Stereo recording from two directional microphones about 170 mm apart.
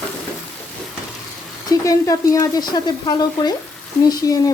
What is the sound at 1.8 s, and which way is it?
Speech, 20° left (ahead or behind).